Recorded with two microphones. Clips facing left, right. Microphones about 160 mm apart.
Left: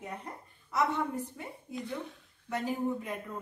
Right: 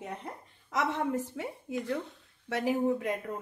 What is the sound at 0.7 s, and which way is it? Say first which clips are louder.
A woman's voice: right 1 dB; 90° right.